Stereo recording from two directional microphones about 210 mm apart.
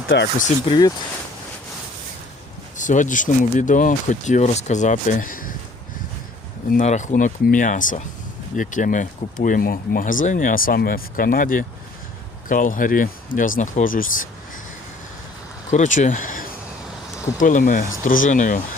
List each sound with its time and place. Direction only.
0.1 s speech: 55° left (ahead or behind)
0.6 s speech: 20° left (ahead or behind)
2.7 s speech: 35° left (ahead or behind)
6.7 s speech: 35° left (ahead or behind)
15.7 s speech: 35° left (ahead or behind)